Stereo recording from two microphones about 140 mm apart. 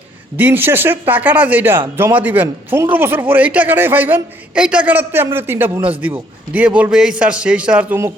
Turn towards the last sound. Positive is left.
turn(degrees=-10)  # may be behind; listen again after turning